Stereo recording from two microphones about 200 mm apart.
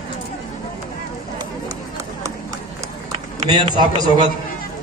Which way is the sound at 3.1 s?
25° right (ahead or behind).